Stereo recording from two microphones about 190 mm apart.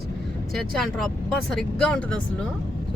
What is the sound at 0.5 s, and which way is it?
Speech, centre (ahead or behind).